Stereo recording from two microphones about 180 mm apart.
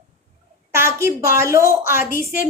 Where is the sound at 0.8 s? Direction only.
15° right (ahead or behind).